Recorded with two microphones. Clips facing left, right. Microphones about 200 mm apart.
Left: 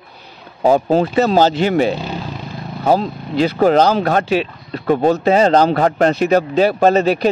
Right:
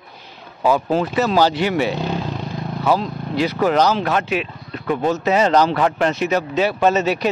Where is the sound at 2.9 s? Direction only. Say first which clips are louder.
Left 5 dB; 30° left (ahead or behind).